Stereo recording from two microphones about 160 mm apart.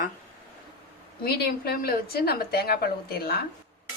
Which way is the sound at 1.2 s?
75° left (ahead or behind).